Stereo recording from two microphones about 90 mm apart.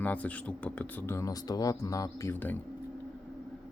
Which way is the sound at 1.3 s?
45° left (ahead or behind).